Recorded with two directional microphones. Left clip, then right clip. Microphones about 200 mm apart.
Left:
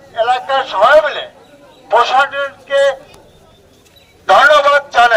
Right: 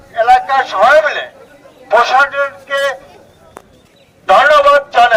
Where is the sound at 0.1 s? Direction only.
15° right (ahead or behind).